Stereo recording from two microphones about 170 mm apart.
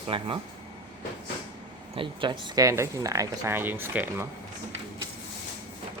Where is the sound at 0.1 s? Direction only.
30° right (ahead or behind).